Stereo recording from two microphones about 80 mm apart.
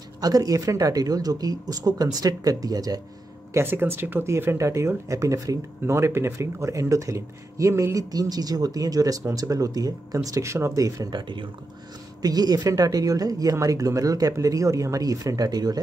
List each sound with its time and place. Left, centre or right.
0.2 s speech: right
3.5 s speech: right
8.1 s speech: right
11.1 s speech: right
12.2 s speech: right